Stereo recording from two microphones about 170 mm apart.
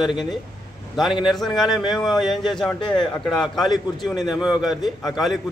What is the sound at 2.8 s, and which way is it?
Speech, 25° left (ahead or behind).